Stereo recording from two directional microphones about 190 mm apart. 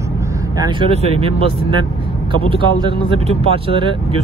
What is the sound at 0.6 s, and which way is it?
Speech, 30° right (ahead or behind).